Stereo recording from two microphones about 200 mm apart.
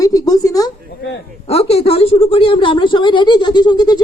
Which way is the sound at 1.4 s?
30° left (ahead or behind).